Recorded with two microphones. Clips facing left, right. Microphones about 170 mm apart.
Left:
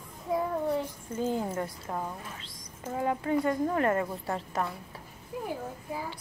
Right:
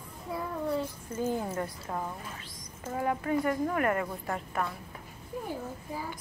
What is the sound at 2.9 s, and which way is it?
A woman's voice, 20° left (ahead or behind).